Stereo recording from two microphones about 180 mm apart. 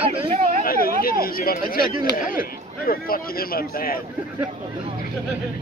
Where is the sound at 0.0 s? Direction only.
30° right (ahead or behind).